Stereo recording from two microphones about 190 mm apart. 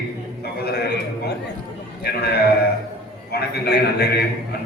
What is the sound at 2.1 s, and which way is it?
Speech, 55° left (ahead or behind).